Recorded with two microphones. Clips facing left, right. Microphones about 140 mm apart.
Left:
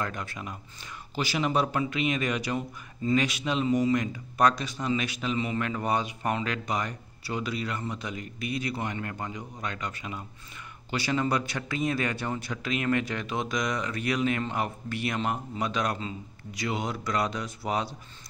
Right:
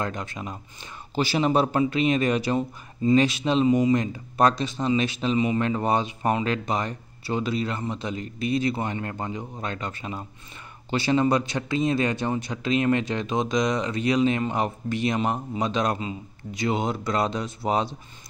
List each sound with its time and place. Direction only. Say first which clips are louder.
0.0 s speech: right 4 dB; 20° right (ahead or behind)
3.6 s speech: right 4 dB; 20° right (ahead or behind)
3.9 s speech: right 4 dB; 30° right (ahead or behind)